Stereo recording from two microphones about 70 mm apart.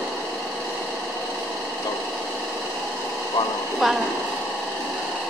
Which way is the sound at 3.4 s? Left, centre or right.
Left.